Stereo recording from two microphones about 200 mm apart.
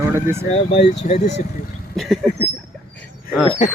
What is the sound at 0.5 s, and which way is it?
Speech, 30° left (ahead or behind).